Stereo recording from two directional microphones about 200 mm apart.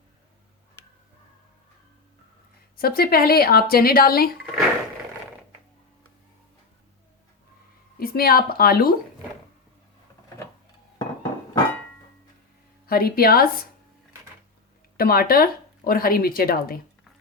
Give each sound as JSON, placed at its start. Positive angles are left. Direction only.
{"t": 2.7, "sound": "speech", "side_deg": 50}
{"t": 7.9, "sound": "a woman's voice", "side_deg": 50}
{"t": 10.9, "sound": "dishes", "side_deg": 20}
{"t": 12.8, "sound": "speech", "side_deg": 50}
{"t": 14.9, "sound": "speech", "side_deg": 50}